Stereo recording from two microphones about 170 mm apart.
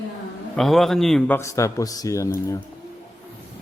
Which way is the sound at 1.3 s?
15° left (ahead or behind).